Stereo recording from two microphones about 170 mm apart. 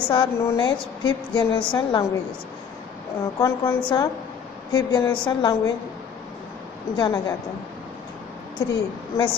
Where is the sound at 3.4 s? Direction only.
20° left (ahead or behind).